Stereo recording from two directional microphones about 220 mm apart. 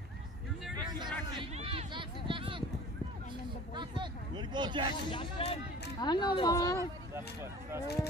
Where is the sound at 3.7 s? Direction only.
20° right (ahead or behind).